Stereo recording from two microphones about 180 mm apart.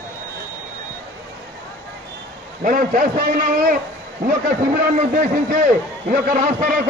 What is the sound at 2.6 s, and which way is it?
A man's voice, 50° right (ahead or behind).